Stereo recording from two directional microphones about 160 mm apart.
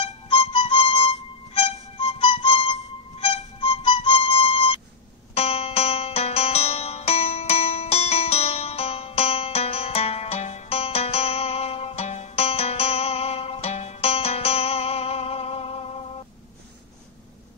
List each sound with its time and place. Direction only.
0.0 s music: 30° left (ahead or behind)